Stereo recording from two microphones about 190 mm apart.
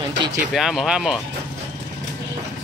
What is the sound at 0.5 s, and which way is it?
Speech, centre (ahead or behind).